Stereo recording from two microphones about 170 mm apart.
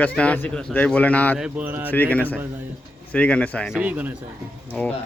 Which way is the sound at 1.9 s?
10° left (ahead or behind).